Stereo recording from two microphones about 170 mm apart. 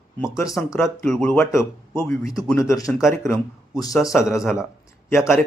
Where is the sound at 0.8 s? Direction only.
5° left (ahead or behind).